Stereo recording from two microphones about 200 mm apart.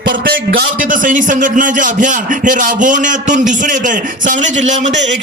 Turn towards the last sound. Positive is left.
turn(degrees=-35)  # may be behind; listen again after turning